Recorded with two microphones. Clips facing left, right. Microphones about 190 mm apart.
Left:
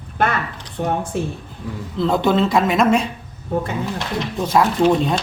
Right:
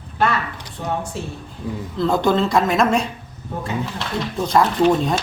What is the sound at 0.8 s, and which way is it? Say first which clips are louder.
Speech: left 5 dB; 55° left (ahead or behind).